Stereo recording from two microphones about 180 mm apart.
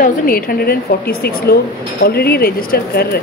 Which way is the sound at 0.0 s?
55° left (ahead or behind).